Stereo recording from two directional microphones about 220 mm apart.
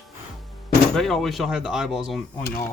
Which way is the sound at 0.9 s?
Centre (ahead or behind).